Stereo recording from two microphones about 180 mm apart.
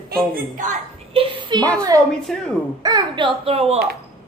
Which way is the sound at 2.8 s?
25° right (ahead or behind).